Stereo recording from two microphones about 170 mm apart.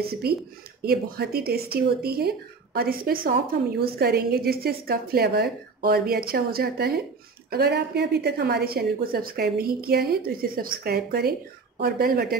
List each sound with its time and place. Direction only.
0.0 s a woman's voice: 65° right (ahead or behind)